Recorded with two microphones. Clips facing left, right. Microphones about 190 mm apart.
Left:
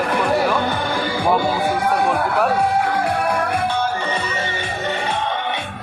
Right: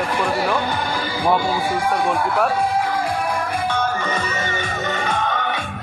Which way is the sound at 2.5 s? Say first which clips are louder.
Left 2 dB; 65° left (ahead or behind).